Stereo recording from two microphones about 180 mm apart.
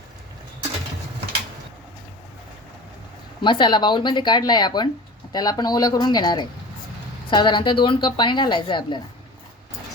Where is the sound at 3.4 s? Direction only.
25° left (ahead or behind).